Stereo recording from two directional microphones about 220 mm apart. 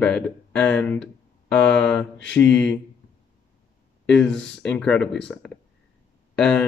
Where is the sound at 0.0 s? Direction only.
5° left (ahead or behind).